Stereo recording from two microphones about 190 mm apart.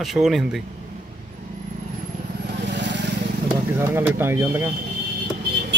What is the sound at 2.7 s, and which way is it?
Vehicle, 70° right (ahead or behind).